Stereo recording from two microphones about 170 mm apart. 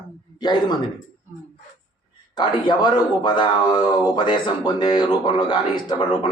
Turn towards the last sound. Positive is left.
turn(degrees=30)  # may be behind; listen again after turning